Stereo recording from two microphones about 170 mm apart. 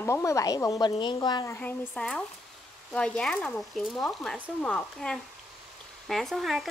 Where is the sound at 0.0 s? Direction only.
15° left (ahead or behind).